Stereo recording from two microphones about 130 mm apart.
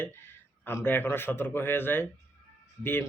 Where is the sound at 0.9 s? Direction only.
15° left (ahead or behind).